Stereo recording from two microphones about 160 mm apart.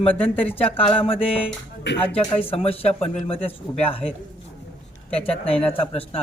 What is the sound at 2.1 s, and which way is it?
Speech, 35° left (ahead or behind).